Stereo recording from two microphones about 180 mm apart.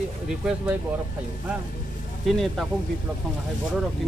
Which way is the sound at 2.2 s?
Centre (ahead or behind).